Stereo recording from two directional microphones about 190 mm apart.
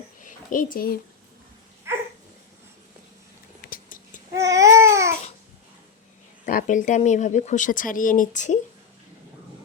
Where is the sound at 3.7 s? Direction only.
45° left (ahead or behind).